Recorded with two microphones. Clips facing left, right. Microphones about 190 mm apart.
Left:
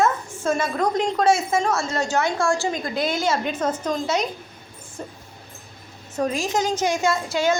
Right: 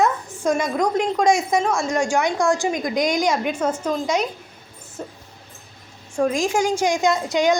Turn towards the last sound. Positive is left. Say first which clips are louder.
# right 3 dB
turn(degrees=-15)  # may be behind; listen again after turning